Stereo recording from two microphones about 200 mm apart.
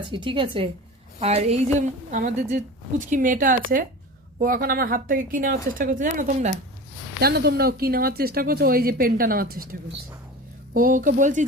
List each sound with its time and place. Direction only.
0.0 s a woman's voice: 25° right (ahead or behind)
2.0 s speech: 40° right (ahead or behind)
7.2 s speech: 50° right (ahead or behind)
10.8 s speech: 45° right (ahead or behind)